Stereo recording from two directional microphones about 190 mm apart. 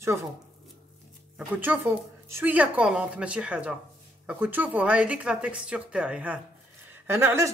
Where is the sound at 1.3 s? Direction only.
10° right (ahead or behind).